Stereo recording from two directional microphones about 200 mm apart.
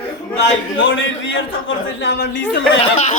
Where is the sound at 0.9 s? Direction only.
70° left (ahead or behind).